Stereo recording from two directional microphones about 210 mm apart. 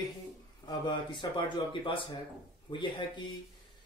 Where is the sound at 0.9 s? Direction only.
20° left (ahead or behind).